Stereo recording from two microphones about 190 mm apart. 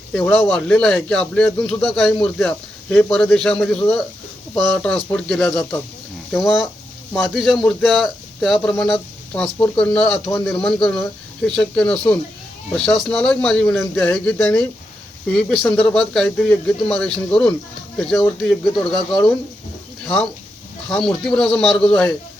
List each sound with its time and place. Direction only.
0.1 s speech: 5° left (ahead or behind)
7.1 s speech: centre (ahead or behind)
10.2 s a man's voice: 15° left (ahead or behind)
10.5 s speech: centre (ahead or behind)
21.2 s speech: 5° left (ahead or behind)